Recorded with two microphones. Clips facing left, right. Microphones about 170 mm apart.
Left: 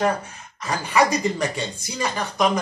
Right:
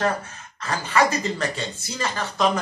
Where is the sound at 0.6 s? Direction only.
15° left (ahead or behind).